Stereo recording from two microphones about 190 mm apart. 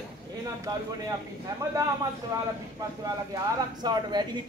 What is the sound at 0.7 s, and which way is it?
Speech, 20° right (ahead or behind).